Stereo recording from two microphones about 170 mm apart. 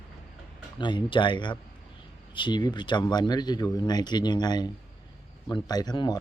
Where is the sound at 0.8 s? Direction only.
30° left (ahead or behind).